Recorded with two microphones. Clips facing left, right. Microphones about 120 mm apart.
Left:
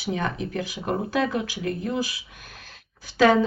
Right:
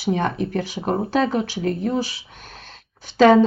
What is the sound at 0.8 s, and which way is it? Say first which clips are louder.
A woman's voice: right 4 dB; 30° right (ahead or behind).